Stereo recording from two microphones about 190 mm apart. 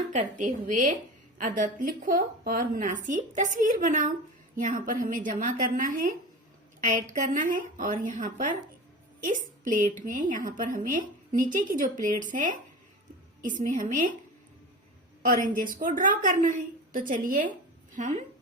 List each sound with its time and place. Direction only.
0.1 s a woman's voice: 40° right (ahead or behind)
15.2 s a woman's voice: 45° right (ahead or behind)